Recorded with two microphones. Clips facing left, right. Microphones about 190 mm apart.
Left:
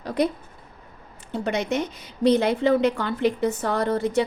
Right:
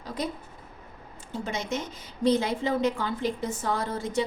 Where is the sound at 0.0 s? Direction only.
65° left (ahead or behind).